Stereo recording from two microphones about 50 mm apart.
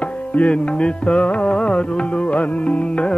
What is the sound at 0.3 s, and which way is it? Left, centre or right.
Music, left.